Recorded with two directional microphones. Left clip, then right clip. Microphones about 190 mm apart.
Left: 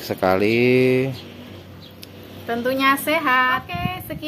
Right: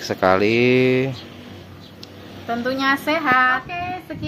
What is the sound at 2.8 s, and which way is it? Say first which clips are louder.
Speech: left 1 dB; 50° left (ahead or behind).